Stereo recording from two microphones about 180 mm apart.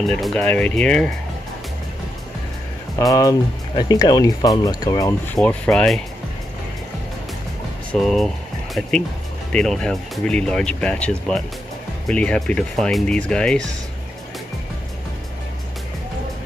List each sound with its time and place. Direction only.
0.0 s speech: centre (ahead or behind)
3.0 s speech: 20° left (ahead or behind)
5.3 s speech: 5° left (ahead or behind)
7.9 s speech: centre (ahead or behind)